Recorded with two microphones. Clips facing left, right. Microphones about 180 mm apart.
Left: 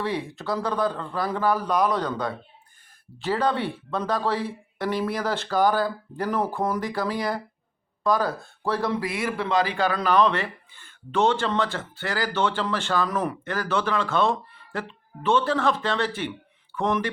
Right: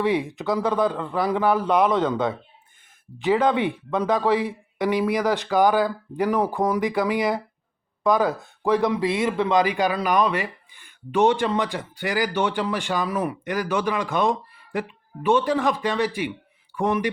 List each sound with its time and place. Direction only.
0.0 s speech: 20° right (ahead or behind)